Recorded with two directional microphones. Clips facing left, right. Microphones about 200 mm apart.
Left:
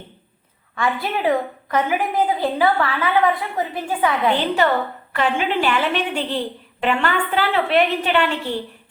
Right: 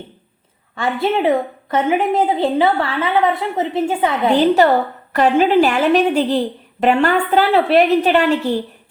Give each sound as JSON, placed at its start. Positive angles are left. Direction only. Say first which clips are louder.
{"t": 0.8, "sound": "a woman's voice", "louder": "right 5 dB", "side_deg": -25}
{"t": 4.3, "sound": "a woman's voice", "louder": "right 9 dB", "side_deg": -40}